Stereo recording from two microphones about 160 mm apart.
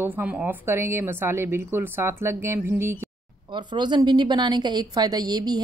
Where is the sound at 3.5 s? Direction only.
30° right (ahead or behind).